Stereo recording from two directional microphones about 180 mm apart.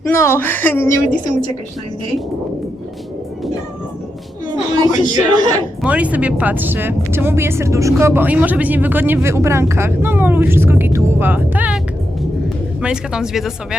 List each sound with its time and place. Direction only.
0.1 s speech: 15° left (ahead or behind)
1.1 s a woman's voice: 45° left (ahead or behind)
4.9 s speech: 25° right (ahead or behind)
5.8 s speech: 5° right (ahead or behind)
12.8 s speech: 5° right (ahead or behind)